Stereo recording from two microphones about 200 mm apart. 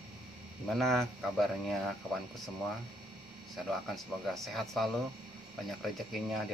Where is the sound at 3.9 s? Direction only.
Centre (ahead or behind).